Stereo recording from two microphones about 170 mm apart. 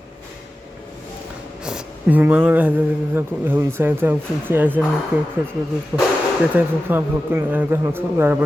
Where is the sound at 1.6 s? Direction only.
5° right (ahead or behind).